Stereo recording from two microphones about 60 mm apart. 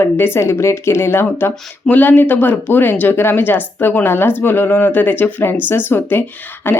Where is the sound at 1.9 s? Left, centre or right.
Left.